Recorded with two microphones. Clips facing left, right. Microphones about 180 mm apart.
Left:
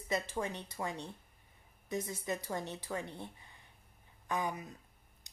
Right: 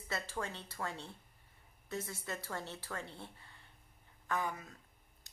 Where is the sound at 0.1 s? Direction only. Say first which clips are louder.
Left 5 dB; 15° left (ahead or behind).